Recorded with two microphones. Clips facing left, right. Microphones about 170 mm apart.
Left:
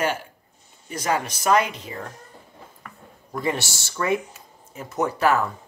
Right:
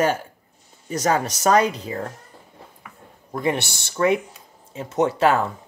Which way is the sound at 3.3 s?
20° right (ahead or behind).